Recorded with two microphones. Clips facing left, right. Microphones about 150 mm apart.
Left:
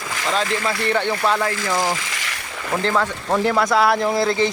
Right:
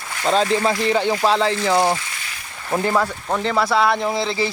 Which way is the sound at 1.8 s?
90° left.